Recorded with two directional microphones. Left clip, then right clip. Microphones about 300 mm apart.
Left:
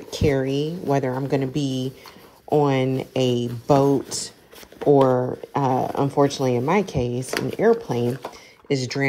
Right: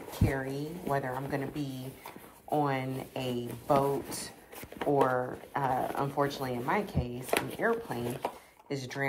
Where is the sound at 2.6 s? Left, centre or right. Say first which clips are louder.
Left 11 dB; left.